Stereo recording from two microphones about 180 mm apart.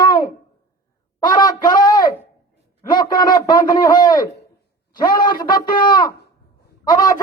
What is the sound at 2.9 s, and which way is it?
Speech, 25° left (ahead or behind).